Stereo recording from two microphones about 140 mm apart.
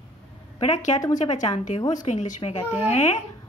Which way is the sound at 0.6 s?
55° left (ahead or behind).